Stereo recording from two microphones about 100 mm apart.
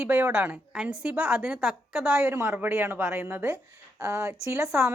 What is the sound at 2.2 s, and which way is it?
A woman's voice, 25° right (ahead or behind).